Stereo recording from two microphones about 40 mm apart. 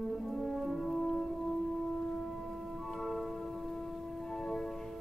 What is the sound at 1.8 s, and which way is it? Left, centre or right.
Music, centre.